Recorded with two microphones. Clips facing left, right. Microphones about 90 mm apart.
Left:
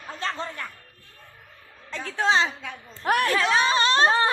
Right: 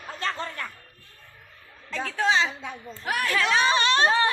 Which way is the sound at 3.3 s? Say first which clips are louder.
Left 1 dB; 25° left (ahead or behind).